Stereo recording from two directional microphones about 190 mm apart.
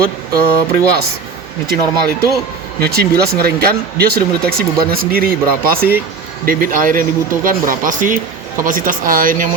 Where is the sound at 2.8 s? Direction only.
55° right (ahead or behind).